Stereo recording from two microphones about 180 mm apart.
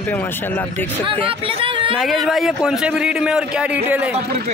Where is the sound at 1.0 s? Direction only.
30° right (ahead or behind).